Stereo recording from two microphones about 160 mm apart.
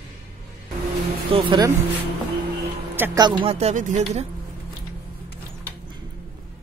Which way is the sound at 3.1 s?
30° right (ahead or behind).